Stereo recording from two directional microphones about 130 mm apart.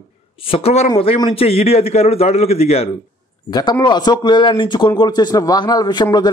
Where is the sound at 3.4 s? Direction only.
35° left (ahead or behind).